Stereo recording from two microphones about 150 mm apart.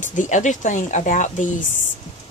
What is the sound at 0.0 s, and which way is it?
Speech, 55° left (ahead or behind).